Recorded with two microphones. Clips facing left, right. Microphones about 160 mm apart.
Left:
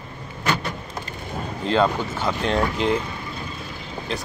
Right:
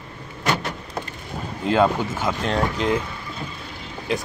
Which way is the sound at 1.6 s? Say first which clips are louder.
Right 2 dB; 10° right (ahead or behind).